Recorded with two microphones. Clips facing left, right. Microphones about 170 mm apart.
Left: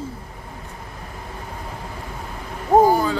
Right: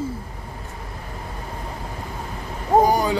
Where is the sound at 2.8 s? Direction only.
15° right (ahead or behind).